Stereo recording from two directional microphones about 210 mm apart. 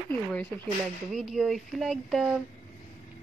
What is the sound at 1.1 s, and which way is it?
Speech, centre (ahead or behind).